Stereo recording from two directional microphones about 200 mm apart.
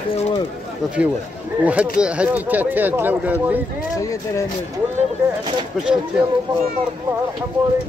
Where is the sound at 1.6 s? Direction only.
5° right (ahead or behind).